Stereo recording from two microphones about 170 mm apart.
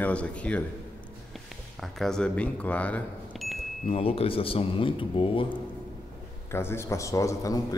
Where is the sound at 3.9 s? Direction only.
35° left (ahead or behind).